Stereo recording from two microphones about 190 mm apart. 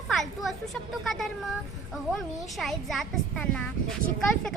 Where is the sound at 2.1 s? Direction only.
Centre (ahead or behind).